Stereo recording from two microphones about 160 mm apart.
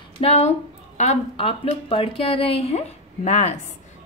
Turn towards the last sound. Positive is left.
turn(degrees=45)  # may be behind; listen again after turning